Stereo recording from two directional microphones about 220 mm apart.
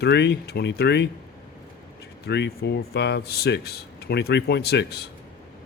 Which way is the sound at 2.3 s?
50° left (ahead or behind).